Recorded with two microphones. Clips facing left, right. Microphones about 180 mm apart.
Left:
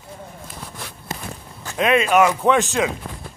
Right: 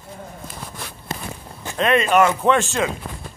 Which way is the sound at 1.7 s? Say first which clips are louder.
Even; 5° left (ahead or behind).